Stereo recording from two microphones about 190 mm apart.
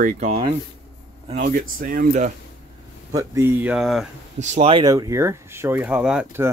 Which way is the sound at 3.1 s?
15° right (ahead or behind).